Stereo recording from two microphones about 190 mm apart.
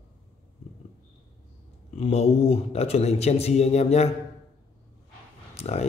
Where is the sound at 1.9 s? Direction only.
30° left (ahead or behind).